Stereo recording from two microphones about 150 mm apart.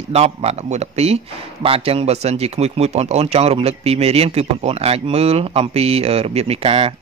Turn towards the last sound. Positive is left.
turn(degrees=-40)  # may be behind; listen again after turning